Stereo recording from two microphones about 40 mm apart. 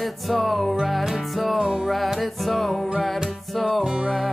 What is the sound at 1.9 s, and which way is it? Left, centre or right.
Music, centre.